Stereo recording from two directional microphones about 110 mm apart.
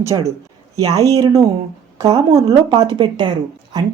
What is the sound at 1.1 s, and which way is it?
A woman's voice, 35° right (ahead or behind).